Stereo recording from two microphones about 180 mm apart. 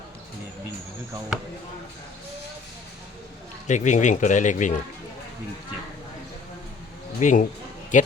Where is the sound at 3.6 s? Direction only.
40° left (ahead or behind).